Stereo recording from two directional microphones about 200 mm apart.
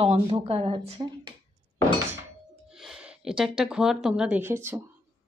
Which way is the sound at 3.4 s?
Centre (ahead or behind).